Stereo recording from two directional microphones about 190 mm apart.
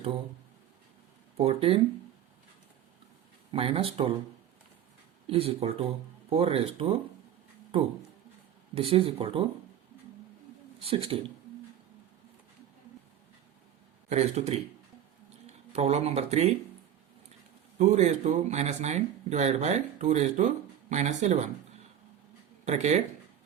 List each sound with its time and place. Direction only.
1.4 s speech: 30° right (ahead or behind)
3.5 s speech: 30° right (ahead or behind)
5.3 s speech: 30° right (ahead or behind)
8.7 s speech: 30° right (ahead or behind)
10.8 s speech: 30° right (ahead or behind)
14.1 s speech: 35° right (ahead or behind)
15.7 s speech: 35° right (ahead or behind)
17.7 s speech: 40° right (ahead or behind)
22.6 s speech: 35° right (ahead or behind)